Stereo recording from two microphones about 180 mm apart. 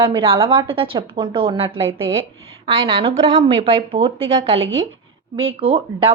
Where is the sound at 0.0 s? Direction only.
30° right (ahead or behind).